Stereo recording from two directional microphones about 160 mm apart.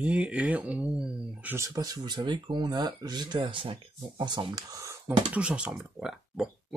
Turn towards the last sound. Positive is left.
turn(degrees=-5)  # may be behind; listen again after turning